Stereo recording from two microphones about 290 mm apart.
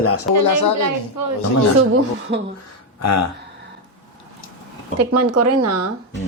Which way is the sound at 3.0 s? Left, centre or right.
Left.